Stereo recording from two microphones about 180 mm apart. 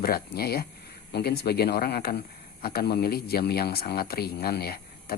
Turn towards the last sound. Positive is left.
turn(degrees=60)  # may be behind; listen again after turning